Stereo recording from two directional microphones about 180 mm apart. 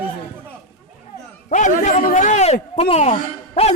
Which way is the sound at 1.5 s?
40° left (ahead or behind).